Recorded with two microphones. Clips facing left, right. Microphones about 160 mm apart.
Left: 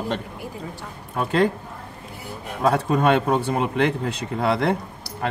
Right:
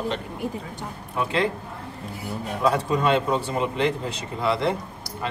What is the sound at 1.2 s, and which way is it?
Speech, 45° left (ahead or behind).